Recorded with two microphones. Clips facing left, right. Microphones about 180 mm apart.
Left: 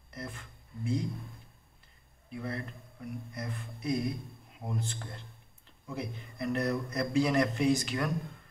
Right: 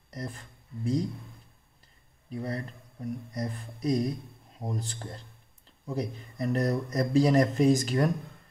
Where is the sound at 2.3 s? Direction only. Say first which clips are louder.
Right 3 dB; 40° right (ahead or behind).